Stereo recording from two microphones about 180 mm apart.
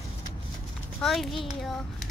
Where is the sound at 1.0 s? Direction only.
Centre (ahead or behind).